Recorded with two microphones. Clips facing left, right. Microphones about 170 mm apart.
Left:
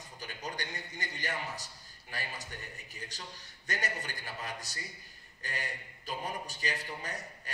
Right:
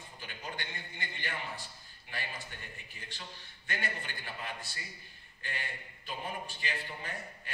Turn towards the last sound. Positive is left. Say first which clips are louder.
# left 1 dB
turn(degrees=40)  # may be behind; listen again after turning